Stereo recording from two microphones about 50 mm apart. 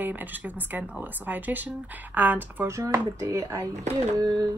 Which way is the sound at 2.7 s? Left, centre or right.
Right.